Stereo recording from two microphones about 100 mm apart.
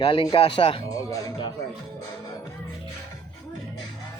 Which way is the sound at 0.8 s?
40° left (ahead or behind).